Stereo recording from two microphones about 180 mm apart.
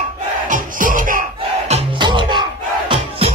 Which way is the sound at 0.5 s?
50° right (ahead or behind).